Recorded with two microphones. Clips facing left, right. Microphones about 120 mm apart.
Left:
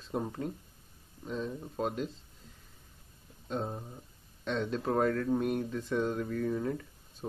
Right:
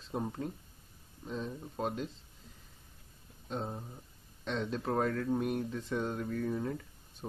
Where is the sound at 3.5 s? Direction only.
20° left (ahead or behind).